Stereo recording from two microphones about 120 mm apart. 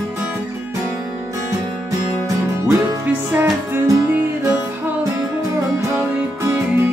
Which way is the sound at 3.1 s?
15° right (ahead or behind).